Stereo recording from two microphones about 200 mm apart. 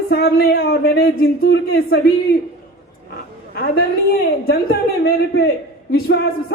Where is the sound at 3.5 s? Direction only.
50° left (ahead or behind).